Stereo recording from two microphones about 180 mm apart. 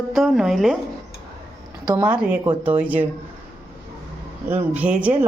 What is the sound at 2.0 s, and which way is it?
Speech, 5° right (ahead or behind).